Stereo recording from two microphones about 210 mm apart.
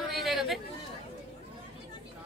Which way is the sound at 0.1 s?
Centre (ahead or behind).